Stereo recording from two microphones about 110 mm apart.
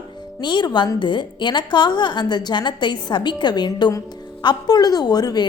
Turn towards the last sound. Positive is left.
turn(degrees=35)  # may be behind; listen again after turning